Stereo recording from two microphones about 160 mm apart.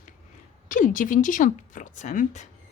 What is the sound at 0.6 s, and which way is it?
A woman's voice, 55° left (ahead or behind).